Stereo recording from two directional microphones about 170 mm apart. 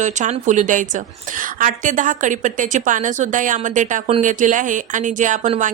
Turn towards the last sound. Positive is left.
turn(degrees=-45)  # may be behind; listen again after turning